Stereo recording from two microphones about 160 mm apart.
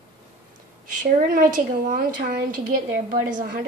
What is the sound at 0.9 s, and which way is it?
Speech, 55° right (ahead or behind).